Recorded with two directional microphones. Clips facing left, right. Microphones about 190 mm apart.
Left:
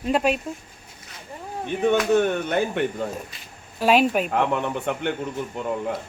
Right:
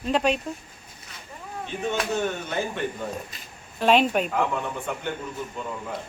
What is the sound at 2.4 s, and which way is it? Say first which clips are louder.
Speech: left 6 dB; 60° left (ahead or behind).